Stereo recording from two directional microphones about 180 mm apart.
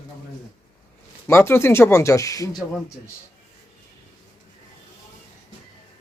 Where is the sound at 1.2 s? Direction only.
15° left (ahead or behind).